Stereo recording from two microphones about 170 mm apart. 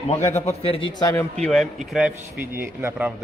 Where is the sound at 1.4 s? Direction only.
Centre (ahead or behind).